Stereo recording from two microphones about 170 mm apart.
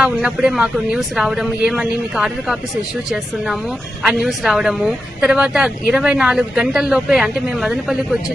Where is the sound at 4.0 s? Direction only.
Centre (ahead or behind).